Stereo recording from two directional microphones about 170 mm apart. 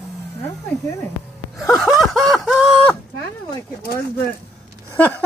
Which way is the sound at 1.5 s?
Centre (ahead or behind).